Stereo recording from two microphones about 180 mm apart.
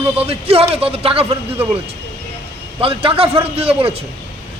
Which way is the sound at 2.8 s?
30° right (ahead or behind).